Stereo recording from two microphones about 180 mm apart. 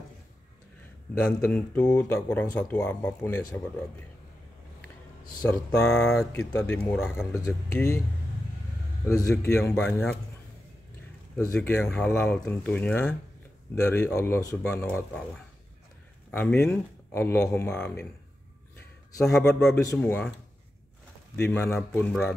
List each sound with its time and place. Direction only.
1.2 s speech: 10° left (ahead or behind)
5.5 s speech: 5° left (ahead or behind)
9.0 s speech: 15° left (ahead or behind)
11.5 s speech: 10° left (ahead or behind)
19.2 s a man's voice: 5° left (ahead or behind)
21.4 s speech: 10° left (ahead or behind)